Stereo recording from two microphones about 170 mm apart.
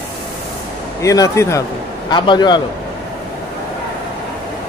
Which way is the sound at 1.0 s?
20° left (ahead or behind).